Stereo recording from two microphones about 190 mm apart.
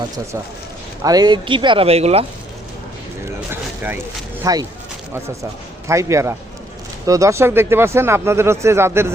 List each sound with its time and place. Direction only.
1.0 s speech: 20° right (ahead or behind)
3.5 s a sound: 10° right (ahead or behind)
4.4 s speech: 20° right (ahead or behind)